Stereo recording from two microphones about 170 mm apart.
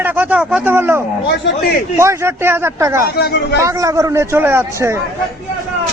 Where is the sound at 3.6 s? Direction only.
20° right (ahead or behind).